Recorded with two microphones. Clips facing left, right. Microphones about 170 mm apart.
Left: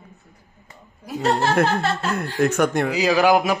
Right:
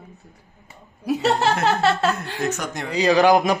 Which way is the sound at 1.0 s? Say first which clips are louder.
Right 1 dB; 70° right (ahead or behind).